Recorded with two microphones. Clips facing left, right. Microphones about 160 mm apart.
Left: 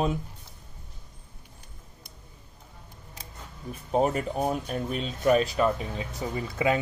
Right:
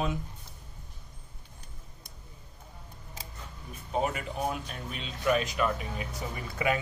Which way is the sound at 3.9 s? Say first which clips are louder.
Left 6 dB; 40° left (ahead or behind).